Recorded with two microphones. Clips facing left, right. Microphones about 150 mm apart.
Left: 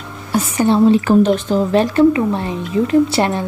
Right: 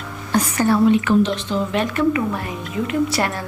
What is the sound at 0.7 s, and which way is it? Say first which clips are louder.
A woman's voice: left 4 dB; 30° left (ahead or behind).